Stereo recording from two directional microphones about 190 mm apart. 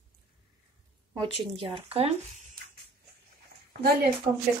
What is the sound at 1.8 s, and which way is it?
Speech, 30° right (ahead or behind).